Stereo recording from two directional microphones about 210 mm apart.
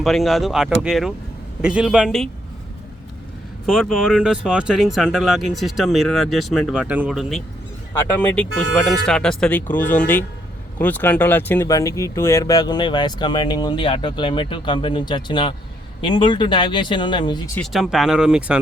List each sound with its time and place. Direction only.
0.0 s speech: centre (ahead or behind)
3.7 s speech: centre (ahead or behind); by 17.6 s 20° left (ahead or behind)
17.6 s speech: centre (ahead or behind)